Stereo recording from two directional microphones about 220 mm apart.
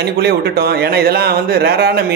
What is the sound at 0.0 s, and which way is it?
A man's voice, 45° right (ahead or behind).